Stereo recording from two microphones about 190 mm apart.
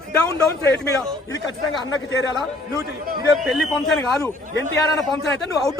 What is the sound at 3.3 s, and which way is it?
Speech, centre (ahead or behind).